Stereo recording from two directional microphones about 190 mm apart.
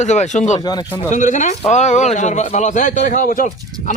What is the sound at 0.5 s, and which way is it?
Speech, 20° left (ahead or behind).